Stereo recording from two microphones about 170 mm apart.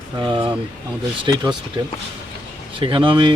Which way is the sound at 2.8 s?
30° right (ahead or behind).